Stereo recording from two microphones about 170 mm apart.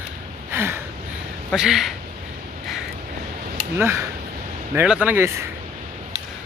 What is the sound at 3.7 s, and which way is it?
Speech, 15° right (ahead or behind).